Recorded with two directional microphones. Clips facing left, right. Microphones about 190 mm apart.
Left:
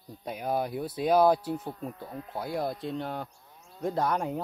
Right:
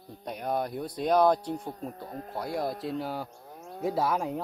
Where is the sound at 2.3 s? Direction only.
Centre (ahead or behind).